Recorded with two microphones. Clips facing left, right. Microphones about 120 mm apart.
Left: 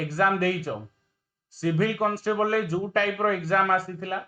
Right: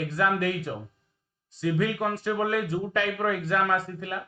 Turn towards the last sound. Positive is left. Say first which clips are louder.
# left 2 dB
turn(degrees=35)  # may be behind; listen again after turning